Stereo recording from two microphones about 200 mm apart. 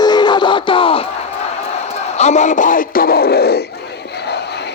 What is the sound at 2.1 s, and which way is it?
Speech, 35° left (ahead or behind).